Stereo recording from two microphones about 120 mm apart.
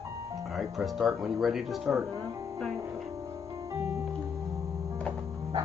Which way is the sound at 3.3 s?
30° right (ahead or behind).